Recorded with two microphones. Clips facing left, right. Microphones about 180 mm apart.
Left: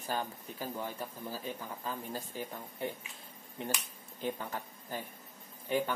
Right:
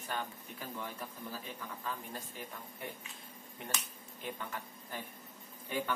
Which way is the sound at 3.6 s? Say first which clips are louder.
Left 5 dB; 30° left (ahead or behind).